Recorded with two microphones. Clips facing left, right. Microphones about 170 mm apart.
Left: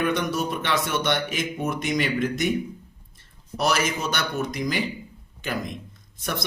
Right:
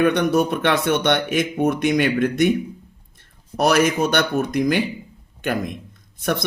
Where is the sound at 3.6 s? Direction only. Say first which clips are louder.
Right 7 dB; 60° right (ahead or behind).